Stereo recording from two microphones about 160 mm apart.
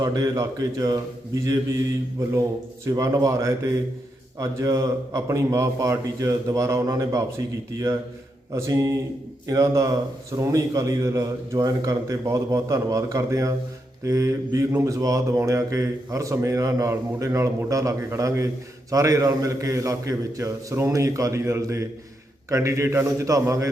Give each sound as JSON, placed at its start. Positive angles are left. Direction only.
{"t": 0.0, "sound": "speech", "side_deg": -20}
{"t": 2.1, "sound": "speech", "side_deg": -20}